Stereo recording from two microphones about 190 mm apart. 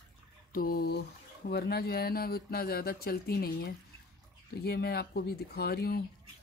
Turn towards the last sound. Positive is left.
turn(degrees=55)  # may be behind; listen again after turning